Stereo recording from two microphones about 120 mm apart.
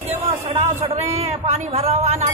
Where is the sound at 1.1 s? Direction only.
60° right (ahead or behind).